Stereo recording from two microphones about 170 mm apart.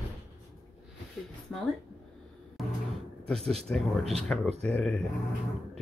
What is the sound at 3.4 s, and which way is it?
Speech, 35° right (ahead or behind).